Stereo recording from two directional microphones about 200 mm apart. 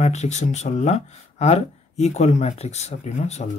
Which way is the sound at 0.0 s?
35° left (ahead or behind).